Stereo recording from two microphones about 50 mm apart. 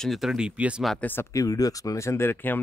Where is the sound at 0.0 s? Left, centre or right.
Centre.